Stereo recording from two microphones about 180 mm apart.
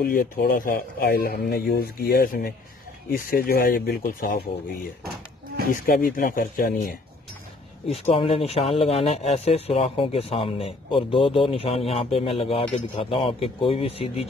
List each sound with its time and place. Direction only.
0.0 s speech: 55° left (ahead or behind)
6.0 s speech: 50° left (ahead or behind)
7.8 s speech: 35° left (ahead or behind)